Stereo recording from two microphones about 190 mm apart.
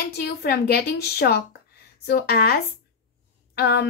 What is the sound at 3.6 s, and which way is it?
Speech, 60° left (ahead or behind).